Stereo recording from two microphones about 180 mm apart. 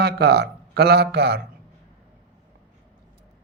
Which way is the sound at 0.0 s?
65° right (ahead or behind).